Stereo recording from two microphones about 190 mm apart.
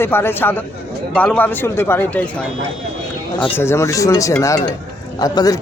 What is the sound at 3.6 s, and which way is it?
A man's voice, 15° left (ahead or behind).